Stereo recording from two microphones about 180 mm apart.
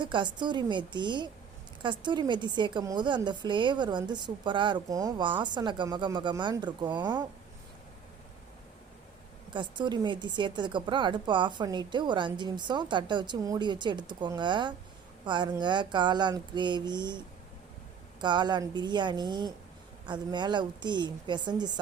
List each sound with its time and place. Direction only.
0.0 s speech: 25° right (ahead or behind)
9.5 s speech: 25° right (ahead or behind)
18.2 s speech: 25° right (ahead or behind)